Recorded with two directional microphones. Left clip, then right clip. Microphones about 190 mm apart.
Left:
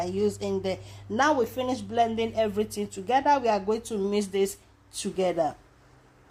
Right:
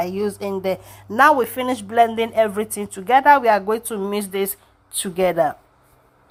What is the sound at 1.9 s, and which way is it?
Speech, 35° right (ahead or behind).